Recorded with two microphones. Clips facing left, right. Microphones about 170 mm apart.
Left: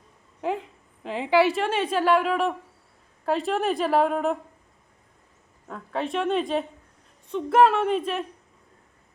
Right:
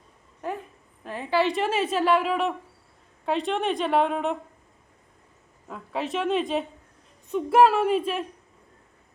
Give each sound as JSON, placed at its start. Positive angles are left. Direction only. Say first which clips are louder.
{"t": 1.0, "sound": "a woman's voice", "louder": "left 4 dB", "side_deg": 15}
{"t": 1.5, "sound": "a woman's voice", "louder": "even", "side_deg": 0}
{"t": 5.6, "sound": "a woman's voice", "louder": "left 1 dB", "side_deg": 0}